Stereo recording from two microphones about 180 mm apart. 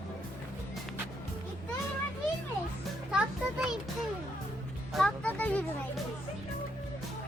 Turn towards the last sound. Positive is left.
turn(degrees=10)  # may be behind; listen again after turning